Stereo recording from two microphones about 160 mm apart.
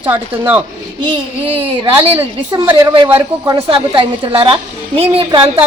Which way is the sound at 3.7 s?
35° right (ahead or behind).